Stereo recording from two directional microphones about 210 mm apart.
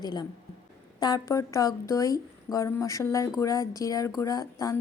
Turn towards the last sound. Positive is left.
turn(degrees=15)  # may be behind; listen again after turning